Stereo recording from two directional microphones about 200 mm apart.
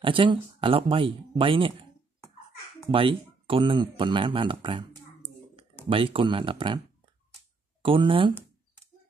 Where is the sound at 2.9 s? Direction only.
25° right (ahead or behind).